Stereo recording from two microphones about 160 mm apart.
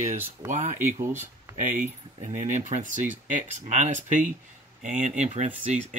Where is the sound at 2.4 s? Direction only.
50° right (ahead or behind).